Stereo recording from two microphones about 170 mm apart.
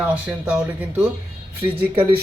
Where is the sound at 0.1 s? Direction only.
5° right (ahead or behind).